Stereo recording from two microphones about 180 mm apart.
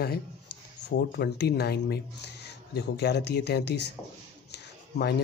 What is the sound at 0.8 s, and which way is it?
Speech, 70° left (ahead or behind).